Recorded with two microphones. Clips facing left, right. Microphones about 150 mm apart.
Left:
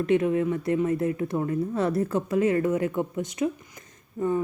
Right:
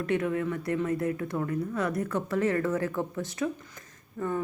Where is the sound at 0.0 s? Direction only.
20° left (ahead or behind).